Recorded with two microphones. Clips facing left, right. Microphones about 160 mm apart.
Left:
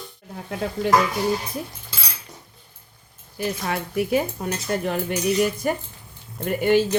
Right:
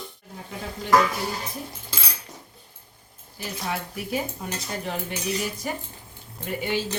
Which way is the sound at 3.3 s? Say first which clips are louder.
Left 5 dB; 60° left (ahead or behind).